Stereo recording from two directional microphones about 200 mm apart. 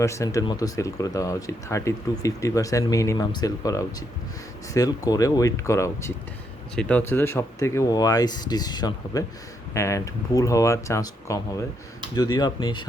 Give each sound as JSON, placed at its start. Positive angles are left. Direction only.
{"t": 0.0, "sound": "speech", "side_deg": 15}